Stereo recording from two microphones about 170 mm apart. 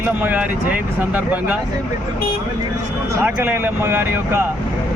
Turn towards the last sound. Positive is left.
turn(degrees=-15)  # may be behind; listen again after turning